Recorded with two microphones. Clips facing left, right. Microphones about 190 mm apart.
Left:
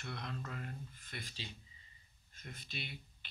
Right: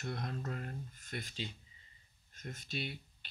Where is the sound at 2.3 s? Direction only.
45° right (ahead or behind).